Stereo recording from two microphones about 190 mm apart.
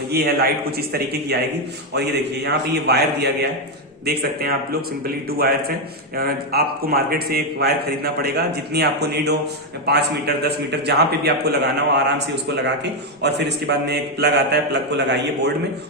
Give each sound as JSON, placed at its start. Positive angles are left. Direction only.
{"t": 0.1, "sound": "a man's voice", "side_deg": -55}